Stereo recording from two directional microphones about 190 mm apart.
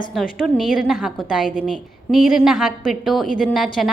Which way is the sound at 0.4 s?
Centre (ahead or behind).